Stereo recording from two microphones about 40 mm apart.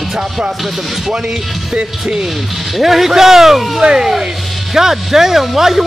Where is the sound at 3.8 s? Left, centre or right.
Centre.